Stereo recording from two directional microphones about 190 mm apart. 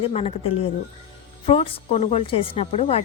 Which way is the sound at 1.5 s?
35° left (ahead or behind).